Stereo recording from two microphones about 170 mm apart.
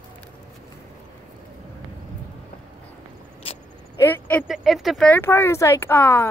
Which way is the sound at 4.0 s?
10° left (ahead or behind).